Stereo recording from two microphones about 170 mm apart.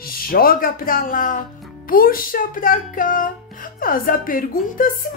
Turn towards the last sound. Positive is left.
turn(degrees=55)  # may be behind; listen again after turning